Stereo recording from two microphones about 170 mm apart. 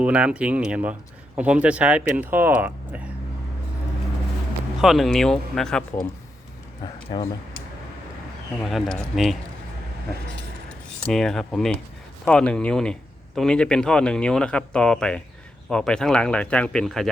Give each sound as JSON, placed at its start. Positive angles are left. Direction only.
{"t": 0.0, "sound": "speech", "side_deg": -5}
{"t": 4.8, "sound": "speech", "side_deg": 0}
{"t": 6.8, "sound": "speech", "side_deg": 25}
{"t": 8.6, "sound": "speech", "side_deg": 0}
{"t": 11.0, "sound": "speech", "side_deg": 5}